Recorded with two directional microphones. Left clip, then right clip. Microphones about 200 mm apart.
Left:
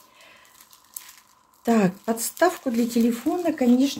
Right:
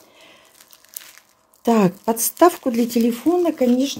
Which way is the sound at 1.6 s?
35° right (ahead or behind).